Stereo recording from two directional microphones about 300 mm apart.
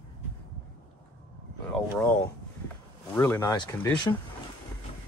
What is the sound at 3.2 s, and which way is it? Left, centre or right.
Speech, centre.